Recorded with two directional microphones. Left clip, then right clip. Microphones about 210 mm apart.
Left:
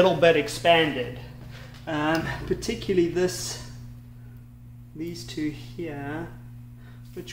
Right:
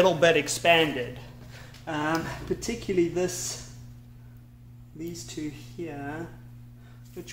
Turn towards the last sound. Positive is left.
turn(degrees=-10)  # may be behind; listen again after turning